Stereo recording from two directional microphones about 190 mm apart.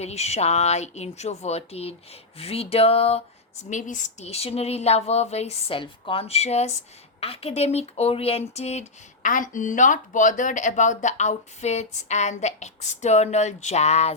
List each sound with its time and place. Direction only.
0.0 s speech: 35° left (ahead or behind)